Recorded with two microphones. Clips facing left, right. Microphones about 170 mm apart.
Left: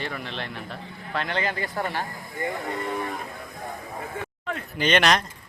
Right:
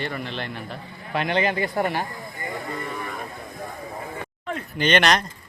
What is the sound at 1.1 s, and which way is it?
Speech, 15° right (ahead or behind).